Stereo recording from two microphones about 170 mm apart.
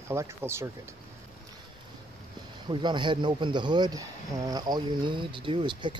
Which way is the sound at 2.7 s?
25° right (ahead or behind).